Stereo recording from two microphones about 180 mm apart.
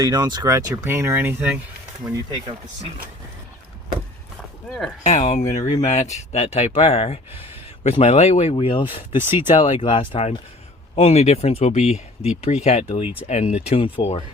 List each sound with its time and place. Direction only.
0.0 s speech: 20° right (ahead or behind)
2.0 s speech: 20° right (ahead or behind)
4.7 s speech: centre (ahead or behind)
5.0 s speech: 40° left (ahead or behind)